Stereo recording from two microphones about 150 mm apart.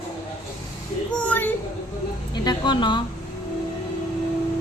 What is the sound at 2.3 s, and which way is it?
Speech, 30° left (ahead or behind).